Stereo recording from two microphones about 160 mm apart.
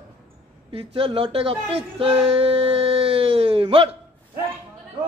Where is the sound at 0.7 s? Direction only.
35° right (ahead or behind).